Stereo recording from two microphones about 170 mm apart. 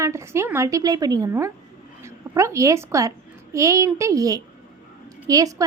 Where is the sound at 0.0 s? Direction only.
15° right (ahead or behind).